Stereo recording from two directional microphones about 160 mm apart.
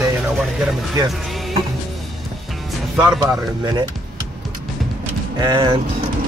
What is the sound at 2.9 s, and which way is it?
Speech, 5° right (ahead or behind).